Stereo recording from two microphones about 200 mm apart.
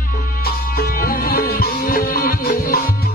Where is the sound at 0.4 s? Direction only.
50° left (ahead or behind).